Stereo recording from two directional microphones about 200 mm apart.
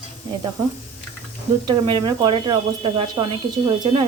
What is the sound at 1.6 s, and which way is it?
Speech, 20° right (ahead or behind).